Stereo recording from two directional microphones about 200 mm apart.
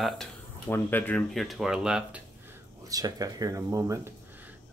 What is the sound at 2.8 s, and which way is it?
Speech, 20° right (ahead or behind).